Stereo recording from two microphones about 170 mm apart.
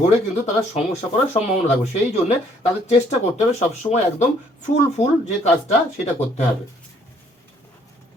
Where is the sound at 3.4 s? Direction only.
40° left (ahead or behind).